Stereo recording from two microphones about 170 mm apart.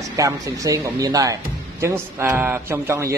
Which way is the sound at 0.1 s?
20° right (ahead or behind).